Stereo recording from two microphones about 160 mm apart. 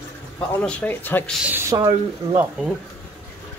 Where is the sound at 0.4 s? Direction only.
5° left (ahead or behind).